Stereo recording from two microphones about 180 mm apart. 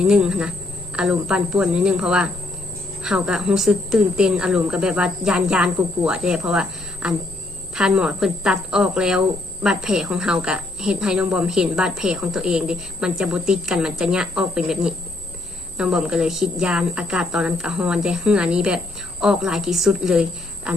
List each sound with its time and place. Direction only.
0.0 s a woman's voice: 5° right (ahead or behind)
20.7 s cricket: 5° right (ahead or behind)